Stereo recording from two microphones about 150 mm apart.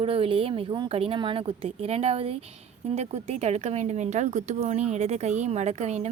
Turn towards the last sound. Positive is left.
turn(degrees=-50)  # may be behind; listen again after turning